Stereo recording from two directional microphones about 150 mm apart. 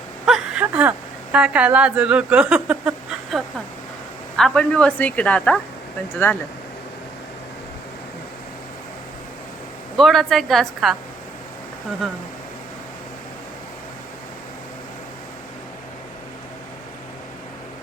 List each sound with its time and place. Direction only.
0.3 s speech: 5° right (ahead or behind)
4.4 s a woman's voice: 5° left (ahead or behind)
10.0 s a woman's voice: centre (ahead or behind)